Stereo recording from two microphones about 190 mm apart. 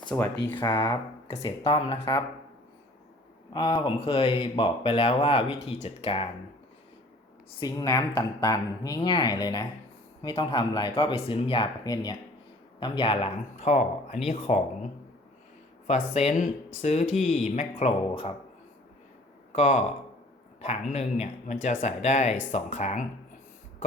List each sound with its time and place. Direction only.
0.1 s speech: 10° left (ahead or behind)
0.6 s speech: 20° left (ahead or behind)
3.5 s speech: 25° left (ahead or behind)
7.6 s speech: 20° left (ahead or behind); by 14.8 s 35° left (ahead or behind)
15.9 s speech: 35° left (ahead or behind)
19.5 s speech: 40° left (ahead or behind)